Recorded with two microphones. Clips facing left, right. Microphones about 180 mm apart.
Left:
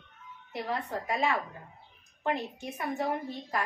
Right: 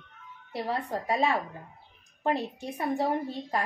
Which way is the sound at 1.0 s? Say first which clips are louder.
Right 4 dB; 35° right (ahead or behind).